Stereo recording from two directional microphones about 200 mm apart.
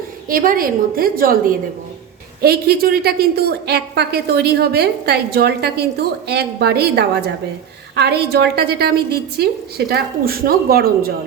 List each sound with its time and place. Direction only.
0.3 s a woman's voice: 45° right (ahead or behind)